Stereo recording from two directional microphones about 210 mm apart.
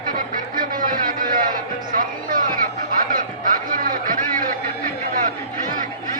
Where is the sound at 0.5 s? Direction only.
40° right (ahead or behind).